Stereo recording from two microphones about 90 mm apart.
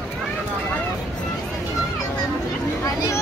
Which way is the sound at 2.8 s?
40° left (ahead or behind).